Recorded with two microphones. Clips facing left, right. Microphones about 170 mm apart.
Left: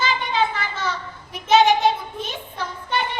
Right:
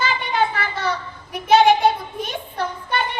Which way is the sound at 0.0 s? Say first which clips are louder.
Right 1 dB; 60° right (ahead or behind).